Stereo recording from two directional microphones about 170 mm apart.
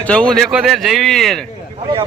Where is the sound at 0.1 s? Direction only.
5° left (ahead or behind).